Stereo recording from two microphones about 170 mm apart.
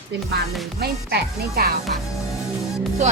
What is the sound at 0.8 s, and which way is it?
Speech, 65° right (ahead or behind).